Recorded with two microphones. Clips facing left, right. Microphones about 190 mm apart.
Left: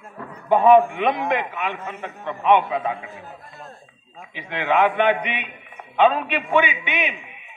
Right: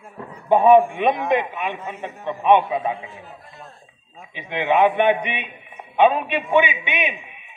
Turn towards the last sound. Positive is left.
turn(degrees=-20)  # may be behind; listen again after turning